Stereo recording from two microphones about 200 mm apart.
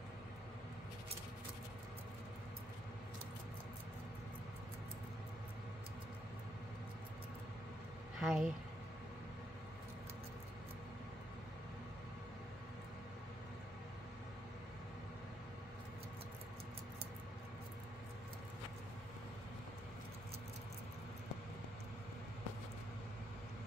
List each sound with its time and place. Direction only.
8.2 s speech: centre (ahead or behind)